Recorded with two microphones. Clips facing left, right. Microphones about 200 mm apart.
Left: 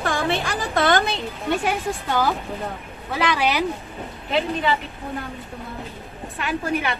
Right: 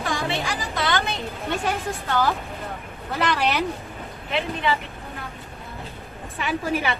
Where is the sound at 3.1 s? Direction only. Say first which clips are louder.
Left 1 dB; centre (ahead or behind).